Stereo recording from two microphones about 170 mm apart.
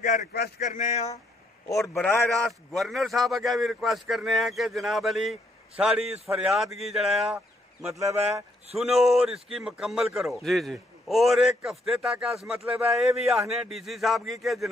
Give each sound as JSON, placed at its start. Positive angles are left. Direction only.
{"t": 0.0, "sound": "speech", "side_deg": 55}
{"t": 2.0, "sound": "a man's voice", "side_deg": 5}
{"t": 7.8, "sound": "a man's voice", "side_deg": -15}
{"t": 8.7, "sound": "a man's voice", "side_deg": -5}